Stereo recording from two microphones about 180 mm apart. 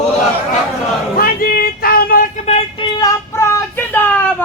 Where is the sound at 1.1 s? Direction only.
55° left (ahead or behind).